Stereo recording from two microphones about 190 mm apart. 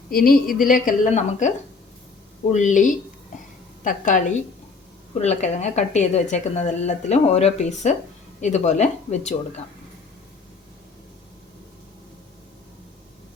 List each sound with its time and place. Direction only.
0.1 s a woman's voice: 50° left (ahead or behind)